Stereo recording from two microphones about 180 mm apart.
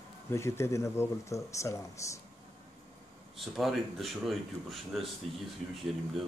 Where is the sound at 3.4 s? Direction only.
Centre (ahead or behind).